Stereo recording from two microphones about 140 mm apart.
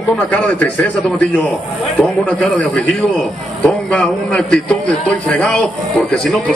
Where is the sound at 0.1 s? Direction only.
10° left (ahead or behind).